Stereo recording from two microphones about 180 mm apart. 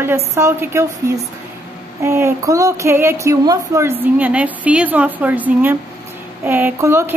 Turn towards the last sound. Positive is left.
turn(degrees=-15)  # may be behind; listen again after turning